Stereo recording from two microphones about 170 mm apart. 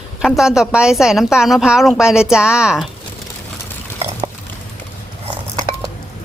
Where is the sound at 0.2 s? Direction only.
5° right (ahead or behind).